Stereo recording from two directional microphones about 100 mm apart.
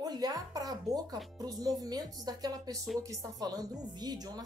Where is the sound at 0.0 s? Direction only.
40° right (ahead or behind).